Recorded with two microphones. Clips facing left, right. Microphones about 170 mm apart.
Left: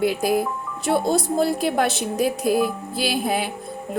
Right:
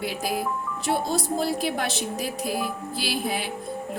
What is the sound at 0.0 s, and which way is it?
Speech, 55° left (ahead or behind).